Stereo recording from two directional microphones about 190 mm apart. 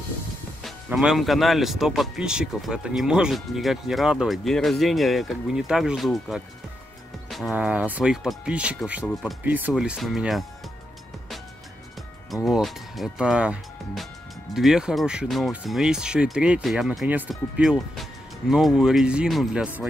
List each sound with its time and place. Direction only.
0.7 s speech: 5° right (ahead or behind)
12.4 s speech: centre (ahead or behind)